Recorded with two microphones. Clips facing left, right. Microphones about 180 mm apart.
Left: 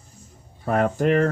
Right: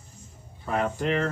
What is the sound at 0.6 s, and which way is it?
Speech, 50° left (ahead or behind).